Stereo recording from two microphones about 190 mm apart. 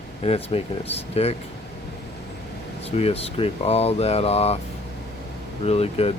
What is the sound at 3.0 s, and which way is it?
Speech, 30° left (ahead or behind).